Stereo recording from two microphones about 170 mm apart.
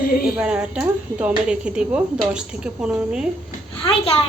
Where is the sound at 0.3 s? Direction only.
5° right (ahead or behind).